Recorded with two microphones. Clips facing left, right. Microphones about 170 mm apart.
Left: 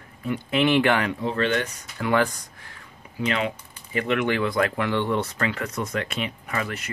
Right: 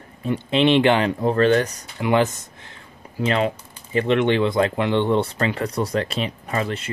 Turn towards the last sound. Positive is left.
turn(degrees=-30)  # may be behind; listen again after turning